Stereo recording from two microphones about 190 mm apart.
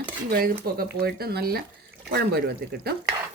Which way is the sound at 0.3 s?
50° right (ahead or behind).